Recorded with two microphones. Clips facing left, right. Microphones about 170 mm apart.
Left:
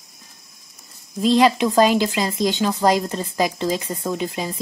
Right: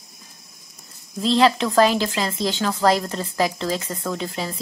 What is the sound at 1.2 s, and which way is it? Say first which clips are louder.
Speech: left 2 dB; 15° left (ahead or behind).